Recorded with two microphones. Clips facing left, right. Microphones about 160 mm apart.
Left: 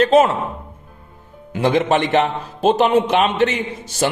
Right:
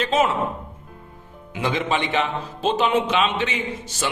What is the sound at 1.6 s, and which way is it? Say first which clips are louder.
A man's voice: left 7 dB; 55° left (ahead or behind).